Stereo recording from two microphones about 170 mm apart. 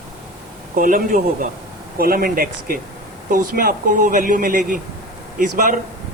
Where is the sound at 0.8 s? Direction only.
55° right (ahead or behind).